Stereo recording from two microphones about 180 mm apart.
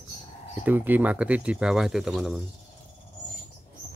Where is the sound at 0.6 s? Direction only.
10° right (ahead or behind).